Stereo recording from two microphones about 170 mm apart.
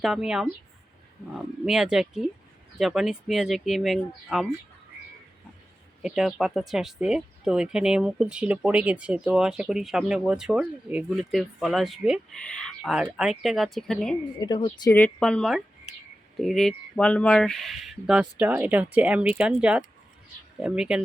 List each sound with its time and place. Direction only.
0.0 s speech: centre (ahead or behind)
1.6 s speech: 5° right (ahead or behind)
6.0 s speech: centre (ahead or behind)
14.3 s speech: 25° left (ahead or behind)
14.9 s speech: 5° left (ahead or behind)